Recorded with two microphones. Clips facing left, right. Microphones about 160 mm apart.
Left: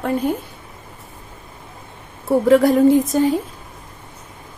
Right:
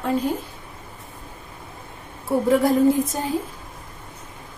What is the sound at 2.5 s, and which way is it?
Speech, 75° left (ahead or behind).